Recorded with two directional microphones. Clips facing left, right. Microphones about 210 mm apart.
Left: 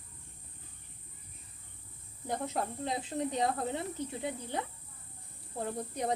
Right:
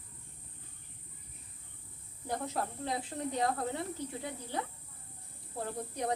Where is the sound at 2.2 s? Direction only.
20° left (ahead or behind).